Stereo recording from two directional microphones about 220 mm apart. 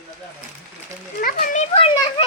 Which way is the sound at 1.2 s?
40° left (ahead or behind).